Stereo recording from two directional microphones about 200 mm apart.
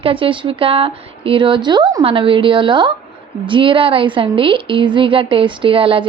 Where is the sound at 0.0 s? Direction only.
25° right (ahead or behind).